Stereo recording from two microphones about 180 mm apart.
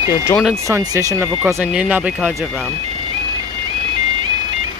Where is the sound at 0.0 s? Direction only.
20° left (ahead or behind).